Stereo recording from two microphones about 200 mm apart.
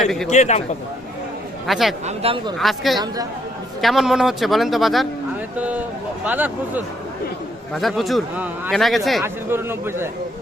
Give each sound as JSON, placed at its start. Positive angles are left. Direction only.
{"t": 0.0, "sound": "a man's voice", "side_deg": 0}
{"t": 0.3, "sound": "a man's voice", "side_deg": 35}
{"t": 1.6, "sound": "a man's voice", "side_deg": 0}
{"t": 2.0, "sound": "speech", "side_deg": -30}
{"t": 2.6, "sound": "a man's voice", "side_deg": 0}
{"t": 9.2, "sound": "speech", "side_deg": -10}